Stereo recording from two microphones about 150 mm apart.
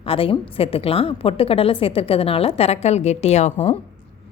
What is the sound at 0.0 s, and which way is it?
A woman's voice, 35° left (ahead or behind).